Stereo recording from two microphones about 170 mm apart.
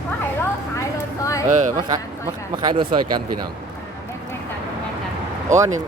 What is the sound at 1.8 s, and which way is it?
Speech, 25° right (ahead or behind).